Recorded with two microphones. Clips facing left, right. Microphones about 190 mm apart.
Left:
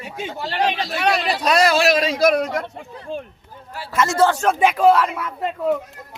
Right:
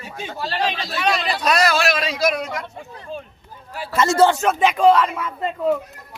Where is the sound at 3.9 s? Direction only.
30° right (ahead or behind).